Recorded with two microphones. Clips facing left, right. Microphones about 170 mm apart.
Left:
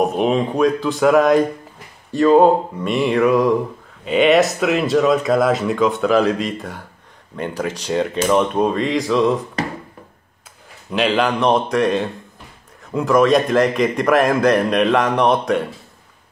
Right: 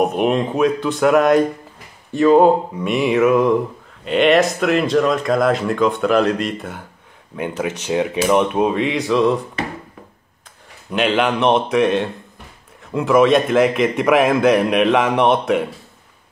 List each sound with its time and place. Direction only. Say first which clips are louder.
0.0 s speech: even; centre (ahead or behind)
10.9 s speech: even; centre (ahead or behind)